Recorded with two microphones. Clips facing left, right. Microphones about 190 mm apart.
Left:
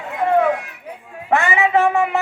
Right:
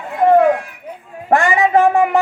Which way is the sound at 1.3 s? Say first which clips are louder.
Right 3 dB; 40° right (ahead or behind).